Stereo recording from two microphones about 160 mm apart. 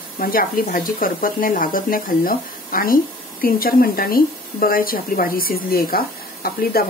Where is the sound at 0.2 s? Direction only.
65° left (ahead or behind).